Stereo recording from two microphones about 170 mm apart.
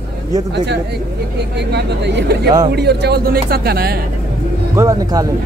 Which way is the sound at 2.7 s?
75° right (ahead or behind).